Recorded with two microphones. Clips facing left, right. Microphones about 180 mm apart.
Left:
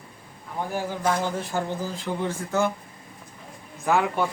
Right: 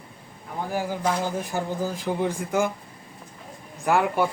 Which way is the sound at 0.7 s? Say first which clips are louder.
Even; 10° right (ahead or behind).